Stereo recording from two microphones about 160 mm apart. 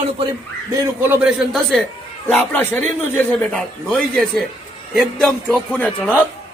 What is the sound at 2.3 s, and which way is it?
A man's voice, 10° left (ahead or behind).